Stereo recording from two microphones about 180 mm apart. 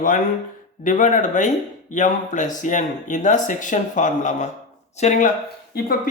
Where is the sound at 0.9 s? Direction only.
45° left (ahead or behind).